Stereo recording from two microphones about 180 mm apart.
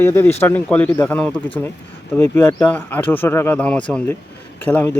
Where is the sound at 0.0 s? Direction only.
15° left (ahead or behind).